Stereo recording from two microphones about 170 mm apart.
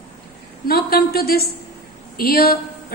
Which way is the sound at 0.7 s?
65° left (ahead or behind).